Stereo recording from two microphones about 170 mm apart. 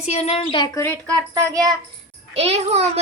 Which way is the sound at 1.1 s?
20° right (ahead or behind).